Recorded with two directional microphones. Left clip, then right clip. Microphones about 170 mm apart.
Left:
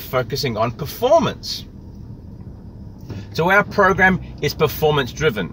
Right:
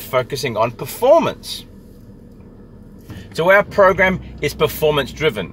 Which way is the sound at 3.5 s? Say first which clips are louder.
Right 3 dB; 20° left (ahead or behind).